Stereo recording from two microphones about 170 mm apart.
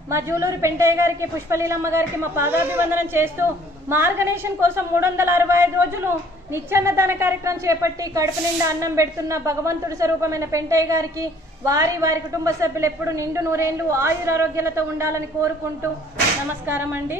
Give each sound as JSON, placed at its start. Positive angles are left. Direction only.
{"t": 0.1, "sound": "a woman's voice", "side_deg": -15}
{"t": 16.6, "sound": "a woman's voice", "side_deg": -10}